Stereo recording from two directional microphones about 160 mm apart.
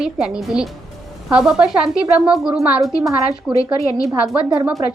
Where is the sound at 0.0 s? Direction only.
Centre (ahead or behind).